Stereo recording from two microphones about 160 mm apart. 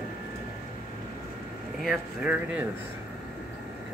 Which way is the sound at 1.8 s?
5° right (ahead or behind).